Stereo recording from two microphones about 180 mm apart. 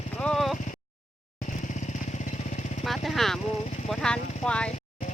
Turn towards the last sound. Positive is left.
turn(degrees=5)  # may be behind; listen again after turning